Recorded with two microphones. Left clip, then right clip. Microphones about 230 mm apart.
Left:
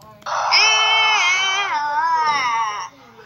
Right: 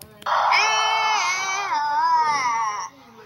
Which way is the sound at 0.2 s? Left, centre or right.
Centre.